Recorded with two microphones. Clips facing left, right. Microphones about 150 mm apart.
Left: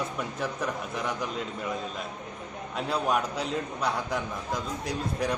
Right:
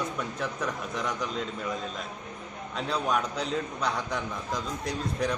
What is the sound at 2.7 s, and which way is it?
A man's voice, 5° left (ahead or behind).